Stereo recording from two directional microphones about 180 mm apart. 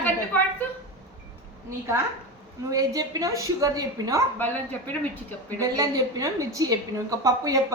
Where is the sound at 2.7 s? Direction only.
20° right (ahead or behind).